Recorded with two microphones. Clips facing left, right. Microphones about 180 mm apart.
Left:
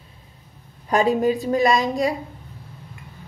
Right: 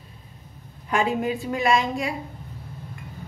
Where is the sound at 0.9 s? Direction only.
40° left (ahead or behind).